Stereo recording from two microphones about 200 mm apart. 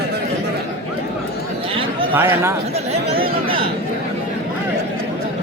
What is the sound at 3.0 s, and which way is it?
Chatter, 25° right (ahead or behind).